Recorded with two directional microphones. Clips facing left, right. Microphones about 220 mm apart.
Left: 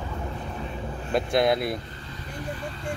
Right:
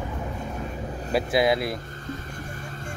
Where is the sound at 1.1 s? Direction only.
Centre (ahead or behind).